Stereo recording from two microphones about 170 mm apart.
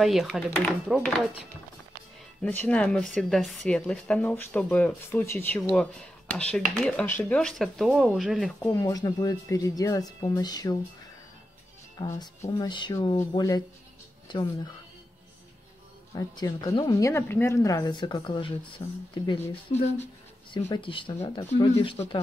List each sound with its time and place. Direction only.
0.0 s speech: centre (ahead or behind)
2.4 s a woman's voice: 10° left (ahead or behind)
8.5 s speech: 15° left (ahead or behind)
12.0 s speech: 25° left (ahead or behind)
16.2 s speech: 20° left (ahead or behind)
19.4 s a woman's voice: 10° left (ahead or behind)
20.8 s speech: 30° left (ahead or behind)